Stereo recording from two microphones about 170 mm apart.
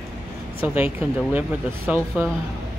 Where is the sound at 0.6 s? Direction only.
10° right (ahead or behind).